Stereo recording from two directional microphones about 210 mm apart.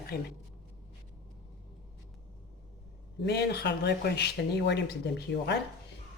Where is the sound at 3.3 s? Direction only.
50° left (ahead or behind).